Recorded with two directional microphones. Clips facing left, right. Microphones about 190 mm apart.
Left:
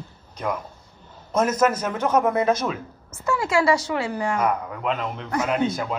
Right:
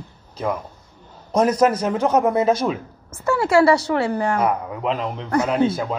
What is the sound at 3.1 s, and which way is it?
Speech, 60° right (ahead or behind).